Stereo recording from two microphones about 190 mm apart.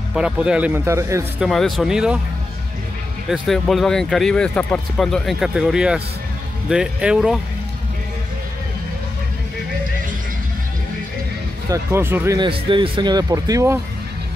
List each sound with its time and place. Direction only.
0.1 s speech: 5° right (ahead or behind)
1.4 s speech: centre (ahead or behind)
3.3 s speech: centre (ahead or behind)
11.7 s speech: 15° right (ahead or behind)
12.4 s speech: 25° right (ahead or behind)